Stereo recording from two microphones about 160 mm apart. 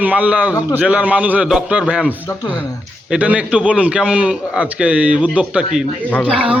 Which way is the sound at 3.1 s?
10° right (ahead or behind).